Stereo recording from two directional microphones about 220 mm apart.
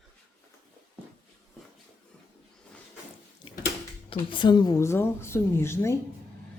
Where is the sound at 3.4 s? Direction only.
20° left (ahead or behind).